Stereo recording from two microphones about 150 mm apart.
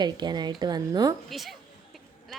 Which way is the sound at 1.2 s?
Centre (ahead or behind).